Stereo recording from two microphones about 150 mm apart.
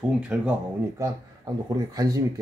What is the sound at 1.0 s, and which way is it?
Speech, 20° right (ahead or behind).